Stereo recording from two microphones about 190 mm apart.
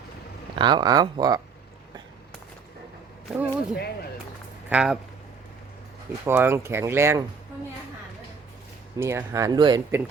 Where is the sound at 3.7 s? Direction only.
55° left (ahead or behind).